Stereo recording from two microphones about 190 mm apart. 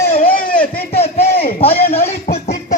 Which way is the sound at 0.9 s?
30° left (ahead or behind).